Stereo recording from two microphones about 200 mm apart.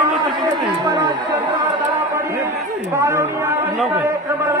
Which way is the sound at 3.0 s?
15° right (ahead or behind).